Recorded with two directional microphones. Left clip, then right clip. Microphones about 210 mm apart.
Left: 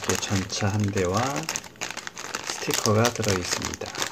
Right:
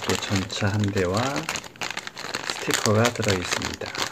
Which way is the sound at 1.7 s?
Centre (ahead or behind).